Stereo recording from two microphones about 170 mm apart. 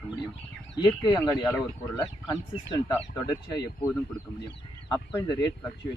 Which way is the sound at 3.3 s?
15° left (ahead or behind).